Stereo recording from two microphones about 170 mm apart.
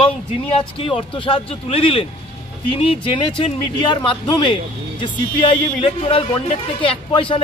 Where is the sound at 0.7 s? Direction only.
30° left (ahead or behind).